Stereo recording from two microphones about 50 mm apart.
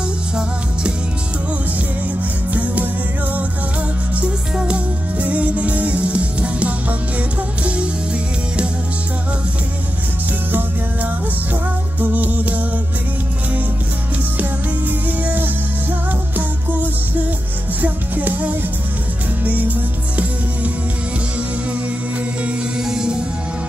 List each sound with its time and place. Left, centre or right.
2.5 s music: right
4.6 s music: right
12.0 s music: right
14.4 s music: right
17.8 s music: right
22.8 s music: centre